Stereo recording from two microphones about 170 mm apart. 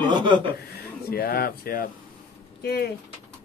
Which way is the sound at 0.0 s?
25° right (ahead or behind).